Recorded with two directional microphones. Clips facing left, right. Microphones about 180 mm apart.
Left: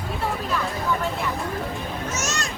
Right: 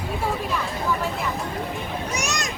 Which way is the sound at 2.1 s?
15° right (ahead or behind).